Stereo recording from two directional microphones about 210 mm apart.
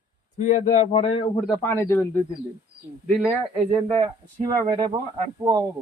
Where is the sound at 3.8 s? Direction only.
25° right (ahead or behind).